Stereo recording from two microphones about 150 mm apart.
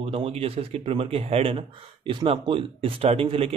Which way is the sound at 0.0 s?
40° right (ahead or behind).